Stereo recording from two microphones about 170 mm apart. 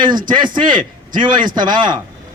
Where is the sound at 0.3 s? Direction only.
25° right (ahead or behind).